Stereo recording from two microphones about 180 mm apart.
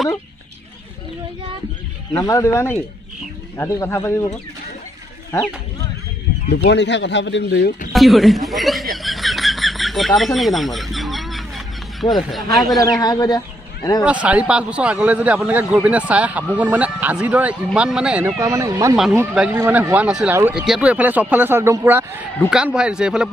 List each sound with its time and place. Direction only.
2.1 s speech: 15° left (ahead or behind)
6.5 s speech: 70° left (ahead or behind)
7.9 s speech: centre (ahead or behind)
8.9 s bird: centre (ahead or behind)
12.5 s speech: centre (ahead or behind)
13.0 s speech: 20° left (ahead or behind)
14.0 s a man's voice: 5° right (ahead or behind)
18.4 s a man's voice: 20° right (ahead or behind)
19.3 s a man's voice: 5° right (ahead or behind)